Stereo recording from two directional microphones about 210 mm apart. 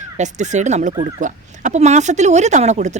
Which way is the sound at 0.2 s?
35° right (ahead or behind).